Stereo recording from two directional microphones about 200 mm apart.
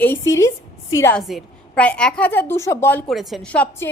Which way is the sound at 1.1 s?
Centre (ahead or behind).